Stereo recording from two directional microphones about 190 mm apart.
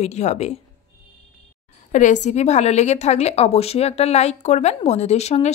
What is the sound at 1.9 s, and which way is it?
A woman's voice, 40° left (ahead or behind).